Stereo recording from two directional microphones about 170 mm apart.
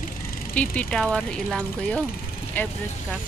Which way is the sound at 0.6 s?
5° left (ahead or behind).